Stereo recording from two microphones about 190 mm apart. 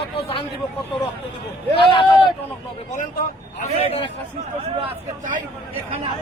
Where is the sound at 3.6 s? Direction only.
30° left (ahead or behind).